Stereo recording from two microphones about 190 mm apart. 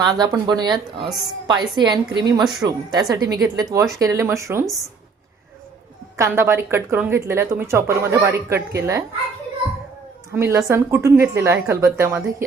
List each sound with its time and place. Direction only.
0.0 s a woman's voice: 20° right (ahead or behind)
6.1 s speech: 15° right (ahead or behind)
10.3 s speech: 15° right (ahead or behind)